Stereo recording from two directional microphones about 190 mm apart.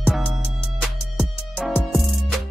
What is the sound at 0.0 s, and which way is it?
Music, 5° right (ahead or behind).